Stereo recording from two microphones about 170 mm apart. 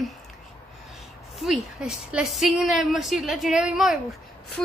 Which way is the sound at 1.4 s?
5° right (ahead or behind).